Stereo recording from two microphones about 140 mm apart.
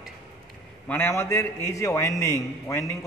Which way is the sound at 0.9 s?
15° left (ahead or behind).